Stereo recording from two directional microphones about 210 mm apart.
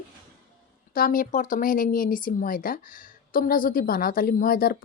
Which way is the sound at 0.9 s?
40° left (ahead or behind).